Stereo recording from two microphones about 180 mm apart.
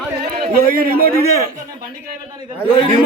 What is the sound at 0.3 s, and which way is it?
Speech, 55° right (ahead or behind).